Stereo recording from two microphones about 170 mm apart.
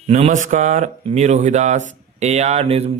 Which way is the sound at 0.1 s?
45° right (ahead or behind).